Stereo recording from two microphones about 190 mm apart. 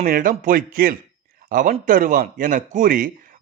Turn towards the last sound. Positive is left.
turn(degrees=-45)  # may be behind; listen again after turning